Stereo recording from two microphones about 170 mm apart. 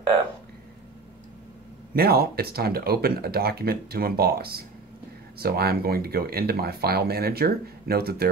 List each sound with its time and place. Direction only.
2.0 s speech: 60° right (ahead or behind)